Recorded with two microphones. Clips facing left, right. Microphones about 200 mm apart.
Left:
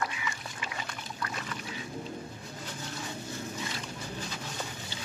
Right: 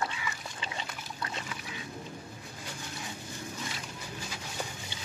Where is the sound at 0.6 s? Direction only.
25° right (ahead or behind).